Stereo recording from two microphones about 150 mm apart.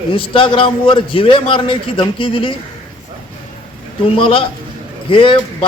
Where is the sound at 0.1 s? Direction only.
35° left (ahead or behind).